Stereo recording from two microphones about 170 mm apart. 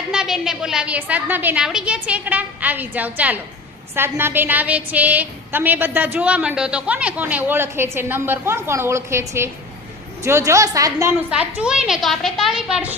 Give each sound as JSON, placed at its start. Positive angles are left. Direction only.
{"t": 0.1, "sound": "a woman's voice", "side_deg": -5}
{"t": 11.3, "sound": "a woman's voice", "side_deg": -5}